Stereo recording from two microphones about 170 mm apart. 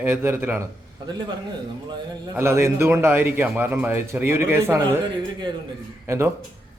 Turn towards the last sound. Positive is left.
turn(degrees=-15)  # may be behind; listen again after turning